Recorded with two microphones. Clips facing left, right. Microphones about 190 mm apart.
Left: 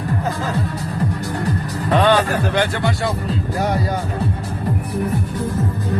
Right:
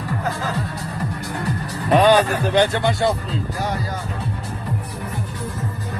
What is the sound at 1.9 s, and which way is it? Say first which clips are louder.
A man's voice: right 1 dB; 10° right (ahead or behind).